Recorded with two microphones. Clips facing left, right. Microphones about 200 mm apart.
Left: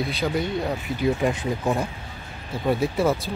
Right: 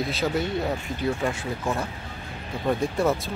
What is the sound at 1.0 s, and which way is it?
Speech, 15° left (ahead or behind).